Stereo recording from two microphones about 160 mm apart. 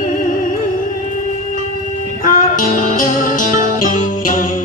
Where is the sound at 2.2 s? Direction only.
60° left (ahead or behind).